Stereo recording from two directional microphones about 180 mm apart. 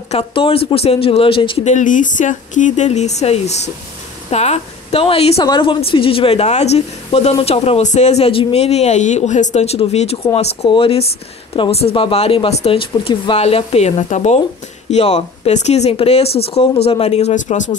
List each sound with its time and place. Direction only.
0.1 s a woman's voice: 30° left (ahead or behind)
1.7 s a woman's voice: 45° left (ahead or behind)